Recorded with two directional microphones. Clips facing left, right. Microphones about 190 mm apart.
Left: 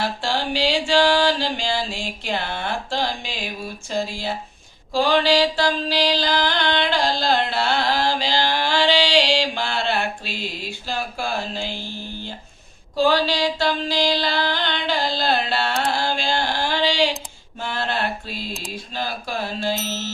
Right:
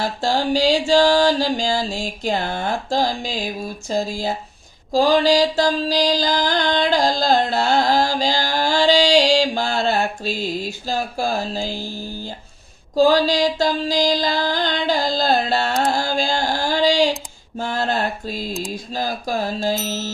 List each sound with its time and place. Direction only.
0.0 s mantra: 40° right (ahead or behind)
3.8 s a sound: 40° right (ahead or behind)
4.9 s mantra: 40° right (ahead or behind)
13.0 s mantra: 40° right (ahead or behind)